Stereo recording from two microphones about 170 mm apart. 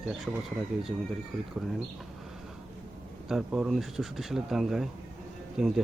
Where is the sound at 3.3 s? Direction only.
5° right (ahead or behind).